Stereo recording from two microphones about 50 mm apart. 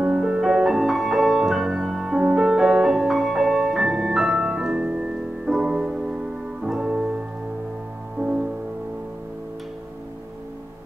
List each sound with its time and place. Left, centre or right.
0.0 s music: centre
2.4 s music: centre
6.6 s piano: centre
8.2 s music: centre